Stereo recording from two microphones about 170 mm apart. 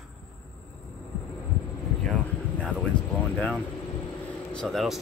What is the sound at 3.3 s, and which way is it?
Speech, 5° left (ahead or behind).